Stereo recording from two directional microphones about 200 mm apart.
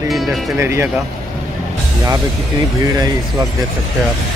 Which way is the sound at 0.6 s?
10° right (ahead or behind).